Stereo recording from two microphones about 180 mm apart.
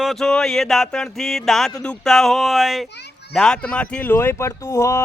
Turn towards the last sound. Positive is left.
turn(degrees=15)  # may be behind; listen again after turning